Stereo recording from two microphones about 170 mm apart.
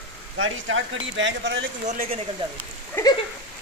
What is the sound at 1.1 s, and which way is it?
Speech, 90° right.